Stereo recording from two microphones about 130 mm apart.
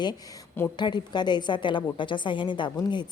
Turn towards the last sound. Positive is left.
turn(degrees=35)  # may be behind; listen again after turning